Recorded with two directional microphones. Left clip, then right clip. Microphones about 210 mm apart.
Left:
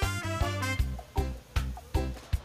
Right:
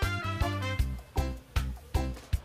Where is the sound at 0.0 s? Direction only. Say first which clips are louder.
Even; centre (ahead or behind).